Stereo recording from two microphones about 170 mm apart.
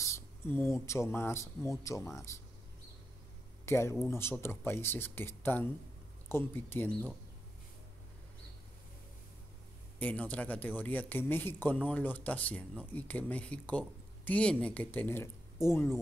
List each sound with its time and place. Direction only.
0.0 s speech: 15° left (ahead or behind)
3.6 s speech: 15° left (ahead or behind)
9.9 s speech: 10° left (ahead or behind)